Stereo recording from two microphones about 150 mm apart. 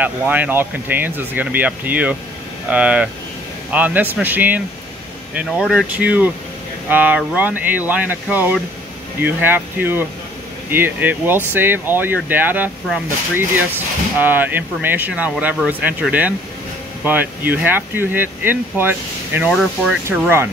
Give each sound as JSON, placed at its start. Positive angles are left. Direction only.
{"t": 0.0, "sound": "speech", "side_deg": -10}
{"t": 19.5, "sound": "speech", "side_deg": 0}
{"t": 20.1, "sound": "speech", "side_deg": -15}